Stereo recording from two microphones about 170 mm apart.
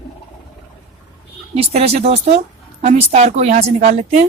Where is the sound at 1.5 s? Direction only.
40° right (ahead or behind).